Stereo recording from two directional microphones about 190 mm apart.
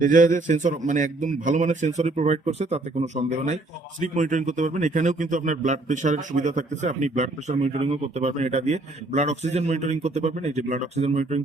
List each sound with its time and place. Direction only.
0.0 s speech: 45° right (ahead or behind)